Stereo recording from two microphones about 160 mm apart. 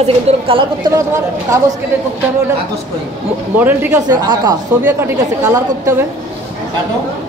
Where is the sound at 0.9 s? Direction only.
20° right (ahead or behind).